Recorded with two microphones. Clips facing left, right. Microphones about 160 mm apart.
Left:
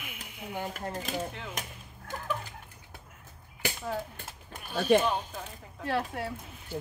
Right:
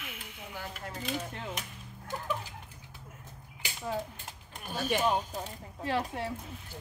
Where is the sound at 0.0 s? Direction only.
15° left (ahead or behind).